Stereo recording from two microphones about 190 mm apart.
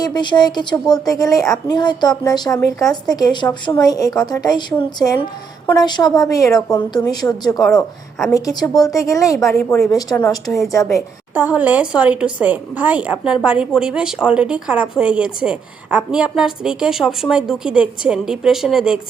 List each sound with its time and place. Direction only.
0.0 s speech: 25° left (ahead or behind)
7.6 s a woman's voice: centre (ahead or behind)
8.3 s speech: 20° left (ahead or behind)
11.3 s a woman's voice: 10° right (ahead or behind)